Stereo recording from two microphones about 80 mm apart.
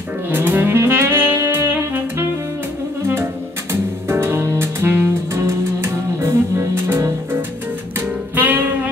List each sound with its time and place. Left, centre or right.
0.3 s saxophone: right
4.1 s music: right
8.4 s saxophone: right